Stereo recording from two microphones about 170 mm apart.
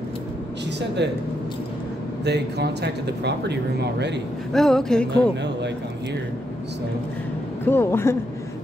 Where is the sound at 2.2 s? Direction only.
80° right.